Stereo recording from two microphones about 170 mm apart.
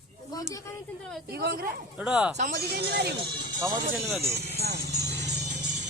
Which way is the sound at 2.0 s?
5° right (ahead or behind).